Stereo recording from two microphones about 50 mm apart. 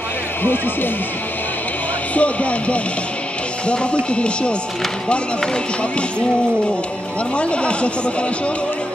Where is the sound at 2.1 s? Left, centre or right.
Left.